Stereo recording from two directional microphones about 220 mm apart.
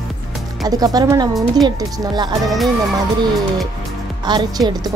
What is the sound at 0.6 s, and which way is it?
Speech, 15° right (ahead or behind).